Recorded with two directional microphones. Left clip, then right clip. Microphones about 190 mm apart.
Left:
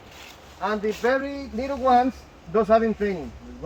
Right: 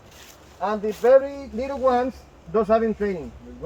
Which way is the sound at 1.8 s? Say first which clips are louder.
Left 2 dB; 35° right (ahead or behind).